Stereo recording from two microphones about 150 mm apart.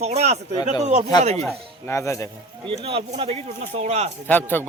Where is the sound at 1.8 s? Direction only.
20° left (ahead or behind).